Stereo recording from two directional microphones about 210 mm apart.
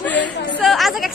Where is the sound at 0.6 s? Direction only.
Centre (ahead or behind).